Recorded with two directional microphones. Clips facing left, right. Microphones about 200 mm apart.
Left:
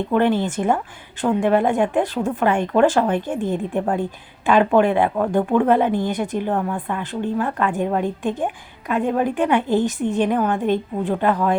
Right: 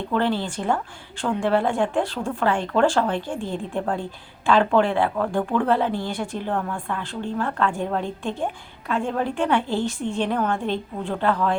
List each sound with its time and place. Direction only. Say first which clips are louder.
0.1 s a woman's voice: left 4 dB; 20° left (ahead or behind)